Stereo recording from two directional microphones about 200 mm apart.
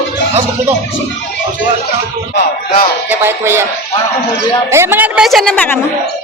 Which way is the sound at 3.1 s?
10° right (ahead or behind).